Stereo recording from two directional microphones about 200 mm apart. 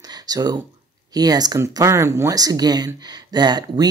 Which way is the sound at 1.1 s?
20° right (ahead or behind).